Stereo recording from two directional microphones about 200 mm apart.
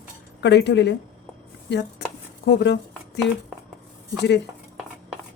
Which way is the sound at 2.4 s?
60° left (ahead or behind).